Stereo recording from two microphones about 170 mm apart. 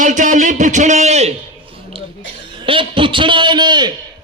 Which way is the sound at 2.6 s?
30° right (ahead or behind).